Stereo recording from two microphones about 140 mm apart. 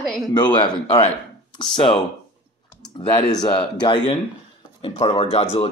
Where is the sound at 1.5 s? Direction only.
35° left (ahead or behind).